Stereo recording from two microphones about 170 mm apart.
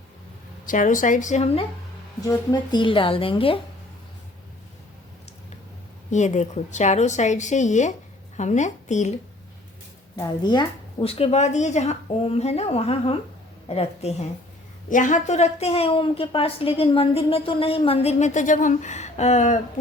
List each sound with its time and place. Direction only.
0.6 s a woman's voice: 50° left (ahead or behind)
2.2 s a woman's voice: 20° left (ahead or behind)
6.1 s a woman's voice: 45° left (ahead or behind)
10.2 s a woman's voice: 25° left (ahead or behind)
14.8 s a woman's voice: 50° left (ahead or behind)